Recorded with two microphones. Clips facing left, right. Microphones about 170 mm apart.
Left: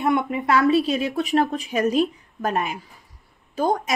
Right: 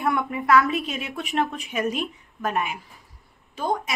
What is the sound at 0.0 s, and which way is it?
A woman's voice, 20° left (ahead or behind).